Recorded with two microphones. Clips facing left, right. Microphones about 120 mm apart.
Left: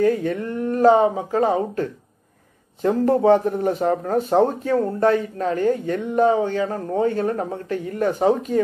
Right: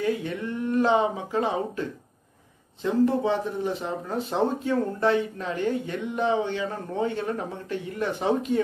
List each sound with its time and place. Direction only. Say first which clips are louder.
0.0 s speech: left 7 dB; 45° left (ahead or behind)